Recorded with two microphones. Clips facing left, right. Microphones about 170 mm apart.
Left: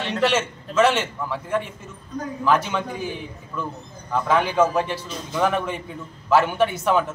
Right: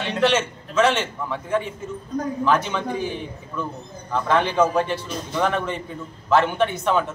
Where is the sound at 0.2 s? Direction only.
5° left (ahead or behind).